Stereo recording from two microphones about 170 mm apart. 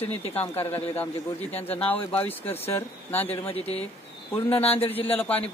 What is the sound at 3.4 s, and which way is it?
Speech, 35° left (ahead or behind).